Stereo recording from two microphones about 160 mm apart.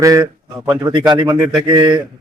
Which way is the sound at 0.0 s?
20° right (ahead or behind).